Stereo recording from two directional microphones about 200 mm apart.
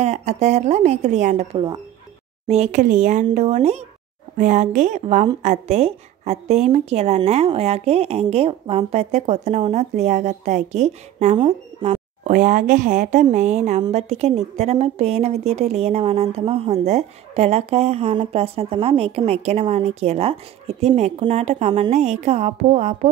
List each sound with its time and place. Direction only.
0.0 s a woman's voice: 35° right (ahead or behind)
12.3 s a woman's voice: 40° right (ahead or behind)